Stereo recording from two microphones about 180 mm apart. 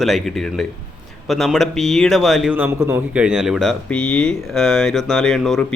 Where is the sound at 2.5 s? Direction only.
10° right (ahead or behind).